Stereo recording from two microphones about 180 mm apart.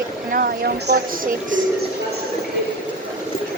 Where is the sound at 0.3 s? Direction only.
55° right (ahead or behind).